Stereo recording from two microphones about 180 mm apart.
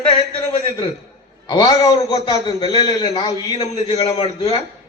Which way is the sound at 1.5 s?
25° left (ahead or behind).